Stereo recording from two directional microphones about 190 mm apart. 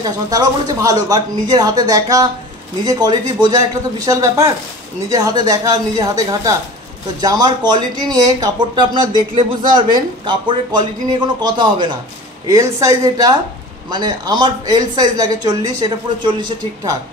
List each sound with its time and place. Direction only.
0.0 s a woman's voice: 20° right (ahead or behind)